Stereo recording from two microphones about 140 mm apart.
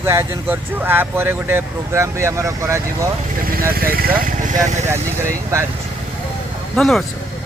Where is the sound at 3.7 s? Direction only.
90° right.